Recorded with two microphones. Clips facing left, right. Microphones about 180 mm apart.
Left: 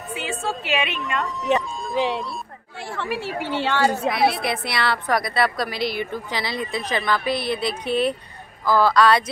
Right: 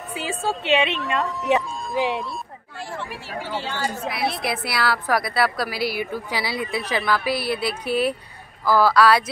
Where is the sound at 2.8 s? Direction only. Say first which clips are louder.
Left 5 dB; 65° left (ahead or behind).